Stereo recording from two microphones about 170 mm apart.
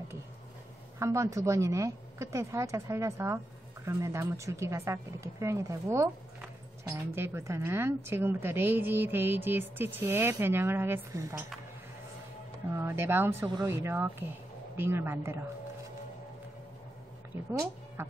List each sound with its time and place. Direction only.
0.9 s a woman's voice: 15° right (ahead or behind)
12.7 s a woman's voice: 15° right (ahead or behind)